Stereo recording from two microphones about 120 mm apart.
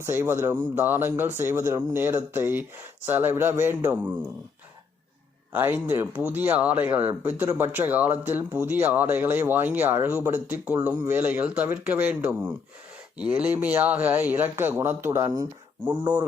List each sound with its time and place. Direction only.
0.0 s speech: 20° right (ahead or behind)
5.5 s speech: 20° right (ahead or behind)